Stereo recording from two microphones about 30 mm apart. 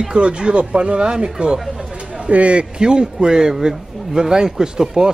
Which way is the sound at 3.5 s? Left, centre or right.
Centre.